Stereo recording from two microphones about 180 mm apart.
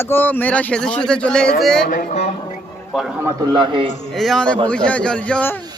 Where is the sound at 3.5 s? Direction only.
25° right (ahead or behind).